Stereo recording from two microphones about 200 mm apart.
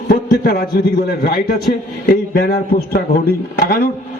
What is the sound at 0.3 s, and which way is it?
A man's voice, 45° left (ahead or behind).